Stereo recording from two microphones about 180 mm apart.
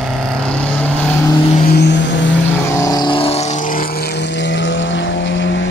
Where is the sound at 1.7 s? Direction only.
70° left (ahead or behind).